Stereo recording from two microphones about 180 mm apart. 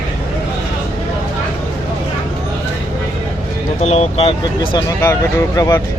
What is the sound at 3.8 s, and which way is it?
Speech, 35° left (ahead or behind).